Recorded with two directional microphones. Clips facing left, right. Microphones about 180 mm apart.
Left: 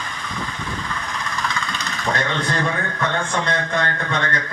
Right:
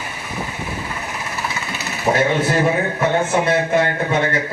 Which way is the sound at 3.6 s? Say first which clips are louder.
Right 6 dB; 20° right (ahead or behind).